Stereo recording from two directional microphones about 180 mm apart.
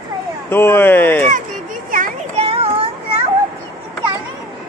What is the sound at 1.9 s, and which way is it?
Children playing, 45° right (ahead or behind).